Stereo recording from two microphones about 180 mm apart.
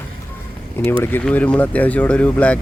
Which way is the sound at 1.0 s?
10° left (ahead or behind).